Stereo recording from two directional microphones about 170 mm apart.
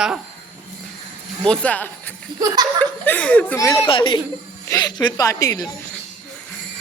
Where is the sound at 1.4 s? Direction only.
5° left (ahead or behind).